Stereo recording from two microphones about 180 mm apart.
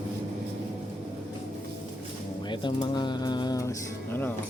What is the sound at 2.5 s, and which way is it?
Speech, 25° left (ahead or behind).